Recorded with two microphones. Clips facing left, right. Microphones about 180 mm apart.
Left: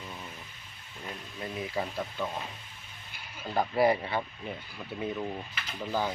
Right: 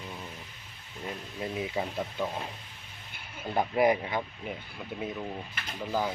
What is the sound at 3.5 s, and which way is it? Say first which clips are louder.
Speech: even; 15° right (ahead or behind).